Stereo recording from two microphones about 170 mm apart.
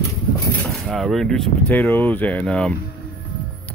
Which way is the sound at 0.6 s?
Centre (ahead or behind).